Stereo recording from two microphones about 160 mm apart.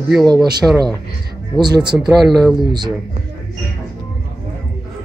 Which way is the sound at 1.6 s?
25° right (ahead or behind).